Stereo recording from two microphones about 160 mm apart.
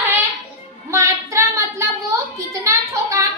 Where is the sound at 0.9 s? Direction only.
20° right (ahead or behind).